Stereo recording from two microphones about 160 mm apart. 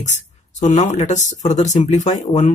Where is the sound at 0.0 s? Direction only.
50° left (ahead or behind).